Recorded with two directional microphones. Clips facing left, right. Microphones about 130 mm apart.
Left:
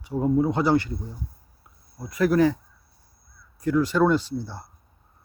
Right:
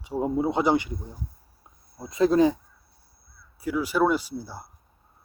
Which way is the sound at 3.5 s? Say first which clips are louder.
Left 3 dB; 10° right (ahead or behind).